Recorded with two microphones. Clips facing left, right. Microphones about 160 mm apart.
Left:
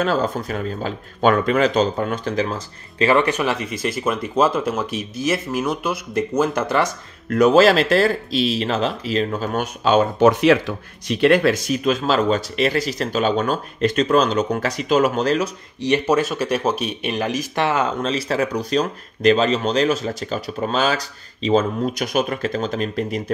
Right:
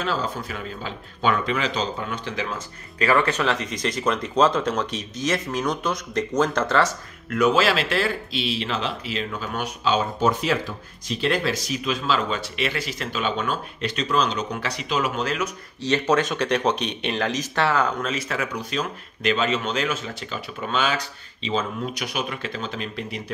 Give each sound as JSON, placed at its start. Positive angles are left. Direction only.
{"t": 0.0, "sound": "speech", "side_deg": 50}
{"t": 3.0, "sound": "speech", "side_deg": 20}
{"t": 7.2, "sound": "speech", "side_deg": 40}
{"t": 10.1, "sound": "speech", "side_deg": 70}
{"t": 15.8, "sound": "speech", "side_deg": 10}